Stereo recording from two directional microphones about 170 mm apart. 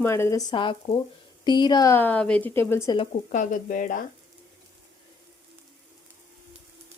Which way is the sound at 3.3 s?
50° left (ahead or behind).